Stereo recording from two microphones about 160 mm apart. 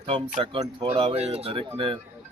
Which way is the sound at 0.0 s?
35° right (ahead or behind).